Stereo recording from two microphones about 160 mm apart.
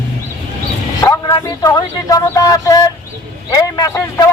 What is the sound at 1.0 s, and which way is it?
Speech, 20° left (ahead or behind).